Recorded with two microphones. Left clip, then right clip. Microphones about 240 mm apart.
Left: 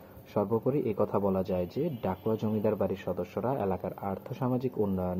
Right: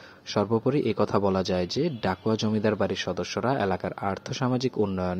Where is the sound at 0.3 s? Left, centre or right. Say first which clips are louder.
Right 4 dB; right.